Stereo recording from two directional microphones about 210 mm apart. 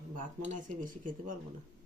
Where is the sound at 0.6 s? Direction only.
40° right (ahead or behind).